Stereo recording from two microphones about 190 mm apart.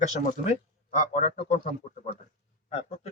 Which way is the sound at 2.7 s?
35° left (ahead or behind).